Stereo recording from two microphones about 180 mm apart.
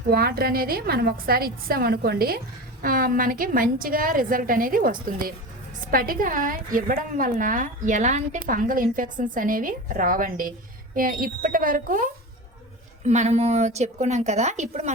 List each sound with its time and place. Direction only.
0.1 s a woman's voice: 60° right (ahead or behind)
13.1 s a woman's voice: 40° right (ahead or behind)